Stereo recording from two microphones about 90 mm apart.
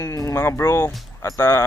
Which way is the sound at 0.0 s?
40° left (ahead or behind).